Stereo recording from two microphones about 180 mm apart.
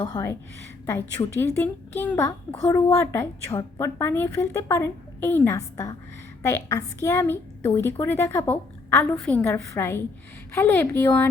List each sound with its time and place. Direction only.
0.0 s a woman's voice: 20° left (ahead or behind)